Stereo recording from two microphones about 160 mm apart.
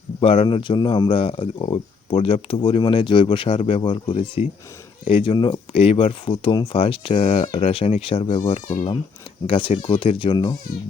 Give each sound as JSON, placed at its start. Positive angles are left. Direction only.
{"t": 0.2, "sound": "speech", "side_deg": 40}